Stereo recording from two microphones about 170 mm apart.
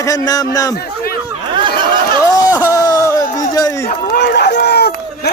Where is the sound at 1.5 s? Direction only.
25° right (ahead or behind).